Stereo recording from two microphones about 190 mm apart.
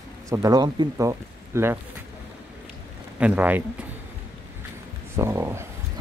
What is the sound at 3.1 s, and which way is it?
Speech, 5° right (ahead or behind).